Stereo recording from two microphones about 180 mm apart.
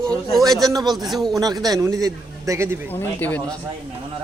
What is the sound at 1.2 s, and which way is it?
A man's voice, 20° right (ahead or behind).